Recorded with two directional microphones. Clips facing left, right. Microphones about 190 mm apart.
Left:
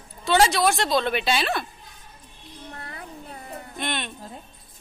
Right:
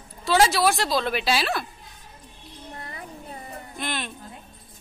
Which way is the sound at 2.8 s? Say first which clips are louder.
Even; centre (ahead or behind).